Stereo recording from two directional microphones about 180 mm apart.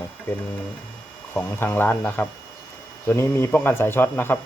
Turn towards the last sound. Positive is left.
turn(degrees=10)  # may be behind; listen again after turning